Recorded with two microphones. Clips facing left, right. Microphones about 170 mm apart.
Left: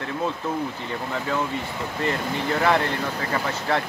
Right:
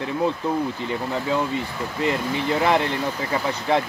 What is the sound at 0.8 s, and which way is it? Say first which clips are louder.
Speech: right 3 dB; 15° right (ahead or behind).